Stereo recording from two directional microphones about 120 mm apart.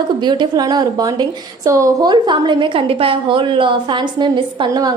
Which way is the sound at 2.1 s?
40° right (ahead or behind).